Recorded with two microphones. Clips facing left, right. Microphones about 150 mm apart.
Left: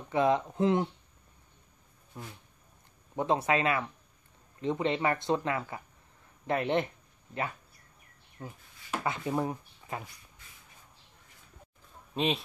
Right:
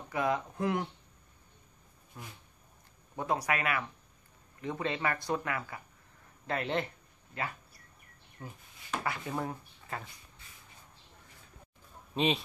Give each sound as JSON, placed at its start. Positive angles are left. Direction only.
{"t": 0.1, "sound": "speech", "side_deg": 20}
{"t": 2.1, "sound": "speech", "side_deg": 20}
{"t": 9.0, "sound": "speech", "side_deg": 20}
{"t": 12.1, "sound": "speech", "side_deg": 0}